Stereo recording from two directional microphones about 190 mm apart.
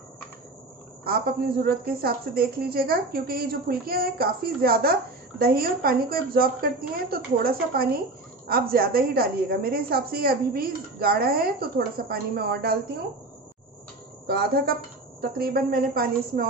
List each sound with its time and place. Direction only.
1.6 s a woman's voice: 55° right (ahead or behind)
14.2 s a woman's voice: 55° right (ahead or behind)